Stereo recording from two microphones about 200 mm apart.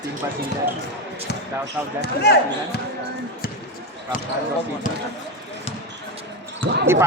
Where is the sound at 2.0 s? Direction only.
55° left (ahead or behind).